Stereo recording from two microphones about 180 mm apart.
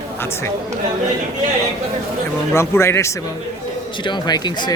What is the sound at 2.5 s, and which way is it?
Speech, 15° left (ahead or behind).